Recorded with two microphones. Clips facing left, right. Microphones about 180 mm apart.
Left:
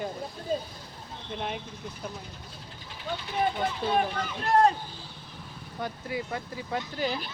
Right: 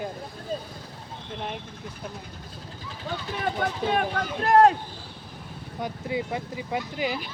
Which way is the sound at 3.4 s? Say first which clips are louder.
Even; 70° right (ahead or behind).